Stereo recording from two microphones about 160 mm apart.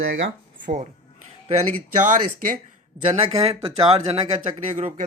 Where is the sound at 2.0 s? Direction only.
55° right (ahead or behind).